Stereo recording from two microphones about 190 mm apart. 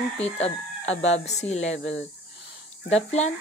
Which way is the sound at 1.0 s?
35° left (ahead or behind).